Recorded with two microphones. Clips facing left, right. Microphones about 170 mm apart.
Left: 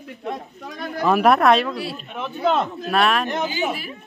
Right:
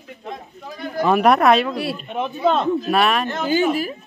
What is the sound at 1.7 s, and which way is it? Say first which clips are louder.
Speech: right 4 dB; 60° right (ahead or behind).